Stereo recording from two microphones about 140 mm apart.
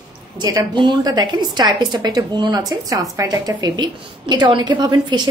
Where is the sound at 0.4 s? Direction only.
35° right (ahead or behind).